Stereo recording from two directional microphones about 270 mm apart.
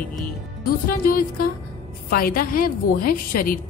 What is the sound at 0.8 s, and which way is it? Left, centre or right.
A woman's voice, left.